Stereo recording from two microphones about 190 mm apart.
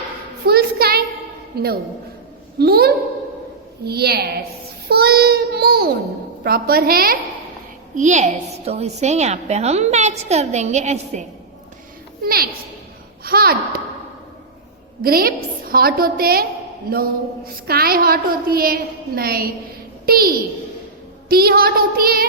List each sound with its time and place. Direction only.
0.4 s a sound: 55° right (ahead or behind)
1.5 s a woman's voice: 55° right (ahead or behind)
4.9 s child singing: 55° right (ahead or behind)
6.4 s a woman's voice: 50° right (ahead or behind)
7.9 s a woman's voice: 40° right (ahead or behind)
12.2 s a woman's voice: 55° right (ahead or behind)
15.0 s a woman's voice: 50° right (ahead or behind)